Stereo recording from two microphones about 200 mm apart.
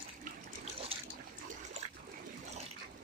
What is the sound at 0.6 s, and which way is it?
Water, 30° right (ahead or behind).